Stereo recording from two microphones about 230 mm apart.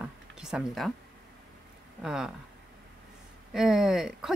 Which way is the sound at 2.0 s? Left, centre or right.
Centre.